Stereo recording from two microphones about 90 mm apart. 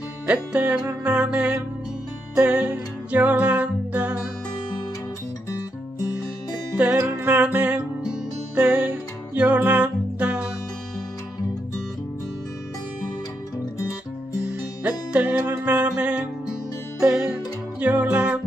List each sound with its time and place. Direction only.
0.3 s music: 15° right (ahead or behind)
7.0 s music: 20° right (ahead or behind)
14.8 s music: 15° right (ahead or behind)